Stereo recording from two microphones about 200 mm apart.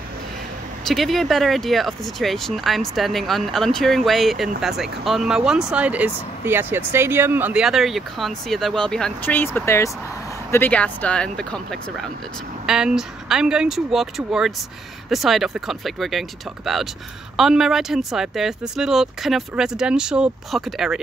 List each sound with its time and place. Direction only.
0.8 s speech: centre (ahead or behind)